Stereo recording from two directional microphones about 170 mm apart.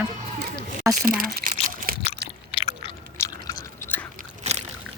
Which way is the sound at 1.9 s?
60° right (ahead or behind).